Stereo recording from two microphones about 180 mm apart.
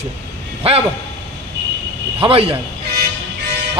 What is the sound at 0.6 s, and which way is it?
Speech, 35° right (ahead or behind).